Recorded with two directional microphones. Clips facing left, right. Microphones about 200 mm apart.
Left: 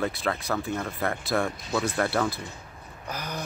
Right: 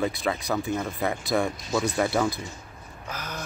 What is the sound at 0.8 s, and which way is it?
Speech, centre (ahead or behind).